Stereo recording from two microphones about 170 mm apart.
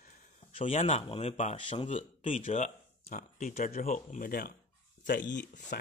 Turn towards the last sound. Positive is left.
turn(degrees=65)  # may be behind; listen again after turning